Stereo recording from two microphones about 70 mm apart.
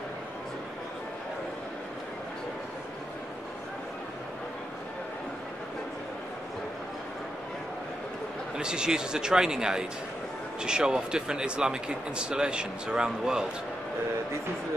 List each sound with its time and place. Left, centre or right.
8.5 s speech: centre